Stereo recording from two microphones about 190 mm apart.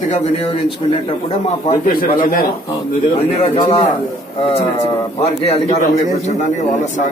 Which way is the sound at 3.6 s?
35° left (ahead or behind).